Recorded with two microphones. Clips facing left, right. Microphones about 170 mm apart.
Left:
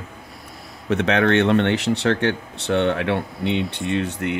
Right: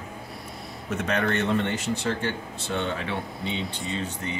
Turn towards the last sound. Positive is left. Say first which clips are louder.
# left 8 dB
turn(degrees=65)  # may be behind; listen again after turning